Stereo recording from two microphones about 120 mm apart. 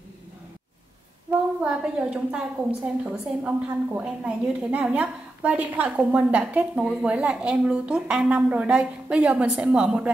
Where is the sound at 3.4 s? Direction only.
10° right (ahead or behind).